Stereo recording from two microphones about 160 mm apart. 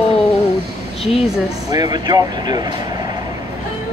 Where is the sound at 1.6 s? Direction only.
25° right (ahead or behind).